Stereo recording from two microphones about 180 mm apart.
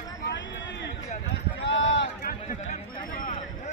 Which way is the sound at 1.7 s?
90° left.